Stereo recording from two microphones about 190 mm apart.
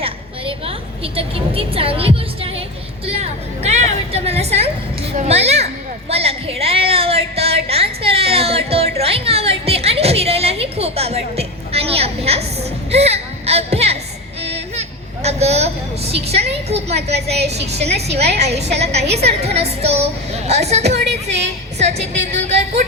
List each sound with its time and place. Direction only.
0.0 s a sound: 30° right (ahead or behind)
3.1 s music: 35° right (ahead or behind)
5.1 s children playing: 35° right (ahead or behind)
6.1 s child singing: 30° right (ahead or behind)
7.7 s music: 30° right (ahead or behind)
12.9 s a sound: 35° right (ahead or behind)
17.3 s a woman's voice: 60° right (ahead or behind)
17.7 s a woman's voice: 35° right (ahead or behind)
18.1 s a woman's voice: 60° right (ahead or behind)
18.3 s a woman's voice: 35° right (ahead or behind)